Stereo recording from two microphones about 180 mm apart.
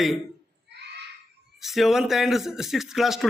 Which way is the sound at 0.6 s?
70° right (ahead or behind).